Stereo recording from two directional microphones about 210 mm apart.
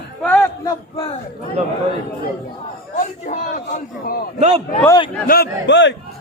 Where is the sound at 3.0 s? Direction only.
35° left (ahead or behind).